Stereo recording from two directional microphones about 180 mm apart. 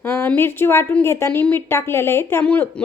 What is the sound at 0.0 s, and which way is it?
A woman's voice, 10° left (ahead or behind).